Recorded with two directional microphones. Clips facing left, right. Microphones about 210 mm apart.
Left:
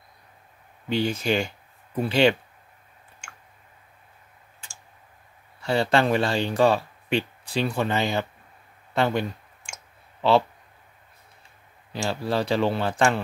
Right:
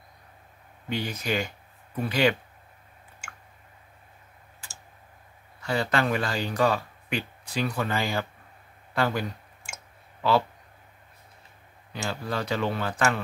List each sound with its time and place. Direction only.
0.8 s speech: 30° left (ahead or behind)
5.6 s speech: 30° left (ahead or behind)
11.9 s a man's voice: 30° left (ahead or behind)